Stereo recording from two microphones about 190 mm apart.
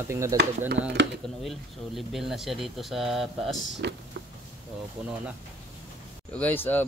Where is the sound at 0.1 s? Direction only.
15° right (ahead or behind).